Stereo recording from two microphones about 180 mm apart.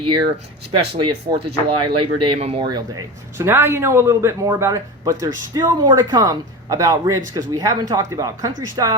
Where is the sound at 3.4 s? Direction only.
10° right (ahead or behind).